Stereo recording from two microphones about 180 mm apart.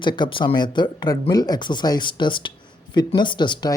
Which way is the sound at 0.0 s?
25° left (ahead or behind).